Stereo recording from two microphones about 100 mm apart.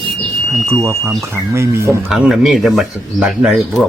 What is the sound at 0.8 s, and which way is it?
Speech, 30° right (ahead or behind).